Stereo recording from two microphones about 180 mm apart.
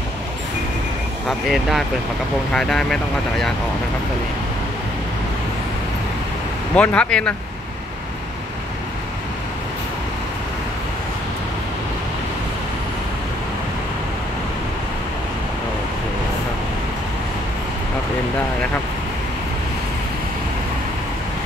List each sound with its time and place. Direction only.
1.5 s speech: centre (ahead or behind)
6.7 s speech: 5° left (ahead or behind)